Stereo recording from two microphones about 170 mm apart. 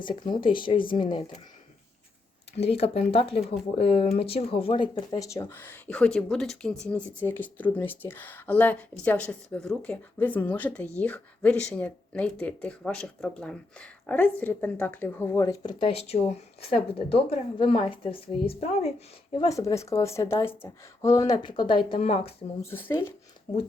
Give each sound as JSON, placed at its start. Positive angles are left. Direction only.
{"t": 0.0, "sound": "a woman's voice", "side_deg": 25}
{"t": 2.6, "sound": "a woman's voice", "side_deg": 35}
{"t": 15.9, "sound": "a woman's voice", "side_deg": 35}
{"t": 19.7, "sound": "a woman's voice", "side_deg": 15}
{"t": 22.6, "sound": "speech", "side_deg": 15}